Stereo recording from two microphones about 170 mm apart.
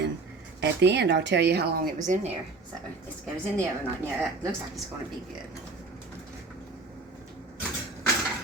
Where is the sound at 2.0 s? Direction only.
45° right (ahead or behind).